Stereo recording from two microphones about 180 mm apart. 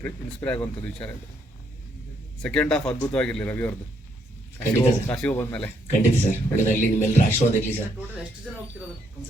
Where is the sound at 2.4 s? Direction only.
5° left (ahead or behind).